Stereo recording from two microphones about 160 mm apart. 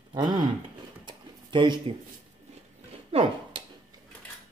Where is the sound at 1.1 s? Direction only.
30° right (ahead or behind).